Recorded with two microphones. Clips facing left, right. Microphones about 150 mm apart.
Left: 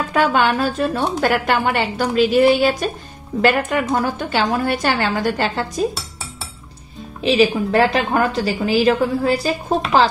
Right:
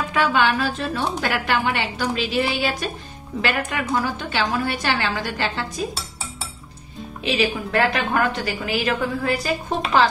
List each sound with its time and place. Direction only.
0.1 s a woman's voice: 45° left (ahead or behind)
7.2 s a woman's voice: 35° left (ahead or behind)